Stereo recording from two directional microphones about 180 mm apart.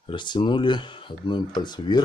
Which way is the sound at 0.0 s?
25° left (ahead or behind).